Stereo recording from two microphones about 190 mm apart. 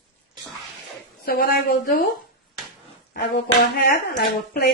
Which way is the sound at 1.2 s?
50° left (ahead or behind).